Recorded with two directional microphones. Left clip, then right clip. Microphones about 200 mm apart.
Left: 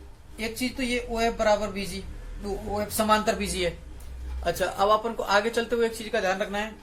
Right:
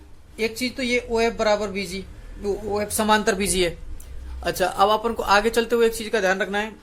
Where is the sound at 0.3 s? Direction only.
50° right (ahead or behind).